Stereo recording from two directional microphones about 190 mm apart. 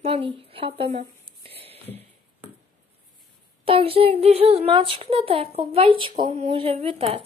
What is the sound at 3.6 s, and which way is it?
A child's voice, 30° right (ahead or behind).